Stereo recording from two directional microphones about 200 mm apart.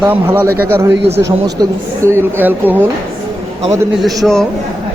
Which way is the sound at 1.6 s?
15° right (ahead or behind).